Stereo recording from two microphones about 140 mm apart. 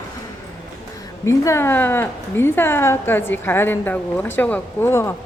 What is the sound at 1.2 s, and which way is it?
A woman's voice, 20° left (ahead or behind).